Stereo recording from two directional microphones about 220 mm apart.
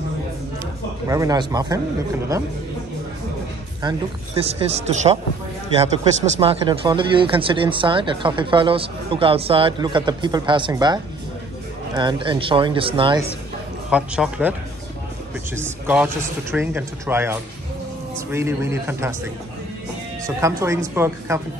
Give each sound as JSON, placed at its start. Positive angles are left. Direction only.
{"t": 1.0, "sound": "speech", "side_deg": -15}
{"t": 4.4, "sound": "speech", "side_deg": -30}
{"t": 6.4, "sound": "speech", "side_deg": -25}
{"t": 13.8, "sound": "speech", "side_deg": -5}
{"t": 15.5, "sound": "speech", "side_deg": -10}
{"t": 20.2, "sound": "speech", "side_deg": -15}